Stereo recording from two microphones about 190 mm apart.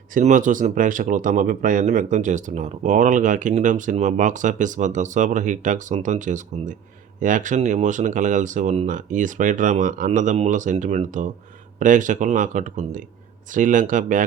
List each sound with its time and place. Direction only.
0.1 s speech: 40° right (ahead or behind)